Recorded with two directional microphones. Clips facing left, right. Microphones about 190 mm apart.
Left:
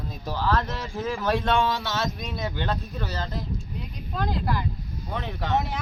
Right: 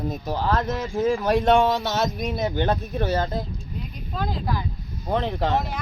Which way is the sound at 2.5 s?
45° right (ahead or behind).